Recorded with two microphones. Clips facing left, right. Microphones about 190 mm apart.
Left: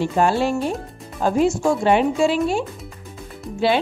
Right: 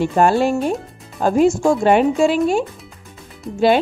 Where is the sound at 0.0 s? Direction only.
50° right (ahead or behind).